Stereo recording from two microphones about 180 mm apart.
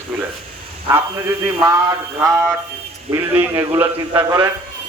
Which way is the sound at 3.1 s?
15° right (ahead or behind).